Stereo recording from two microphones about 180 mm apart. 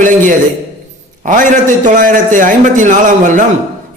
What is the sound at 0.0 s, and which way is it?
Speech, 45° right (ahead or behind).